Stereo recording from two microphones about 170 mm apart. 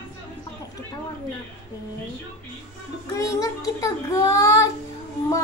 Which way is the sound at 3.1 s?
20° left (ahead or behind).